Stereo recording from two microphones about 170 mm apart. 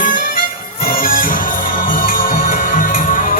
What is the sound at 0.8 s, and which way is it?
Music, 55° left (ahead or behind).